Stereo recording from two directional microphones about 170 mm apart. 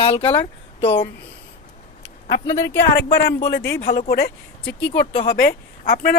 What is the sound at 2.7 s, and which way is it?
Speech, 65° left (ahead or behind).